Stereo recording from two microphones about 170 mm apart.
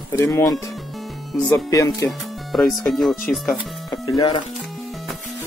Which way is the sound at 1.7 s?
20° left (ahead or behind).